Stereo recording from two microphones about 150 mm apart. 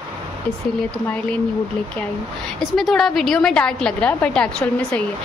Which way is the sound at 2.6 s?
Centre (ahead or behind).